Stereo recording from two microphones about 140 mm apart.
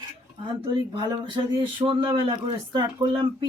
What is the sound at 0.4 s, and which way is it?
Speech, 35° right (ahead or behind).